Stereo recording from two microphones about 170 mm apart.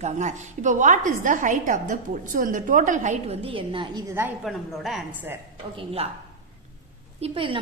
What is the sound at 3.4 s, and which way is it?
Speech, 30° right (ahead or behind).